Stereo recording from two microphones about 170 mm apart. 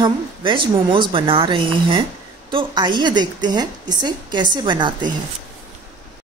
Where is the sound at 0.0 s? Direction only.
30° right (ahead or behind).